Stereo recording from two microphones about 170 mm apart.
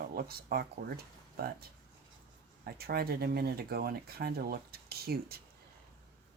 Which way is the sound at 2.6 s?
65° right (ahead or behind).